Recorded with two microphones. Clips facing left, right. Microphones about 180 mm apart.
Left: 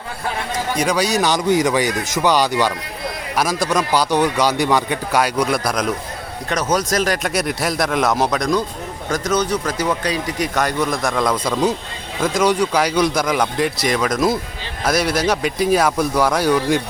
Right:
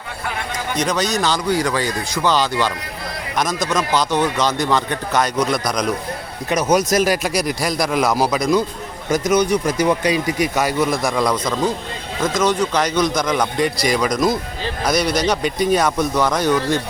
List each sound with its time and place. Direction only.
0.8 s speech: 10° left (ahead or behind)
6.5 s speech: 10° right (ahead or behind); by 16.8 s 10° left (ahead or behind)